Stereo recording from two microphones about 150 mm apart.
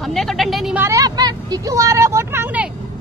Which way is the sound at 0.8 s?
20° right (ahead or behind).